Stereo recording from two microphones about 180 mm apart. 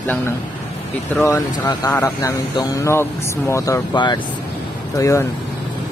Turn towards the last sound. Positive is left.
turn(degrees=15)  # may be behind; listen again after turning